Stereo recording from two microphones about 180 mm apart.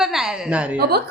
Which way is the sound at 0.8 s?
60° right (ahead or behind).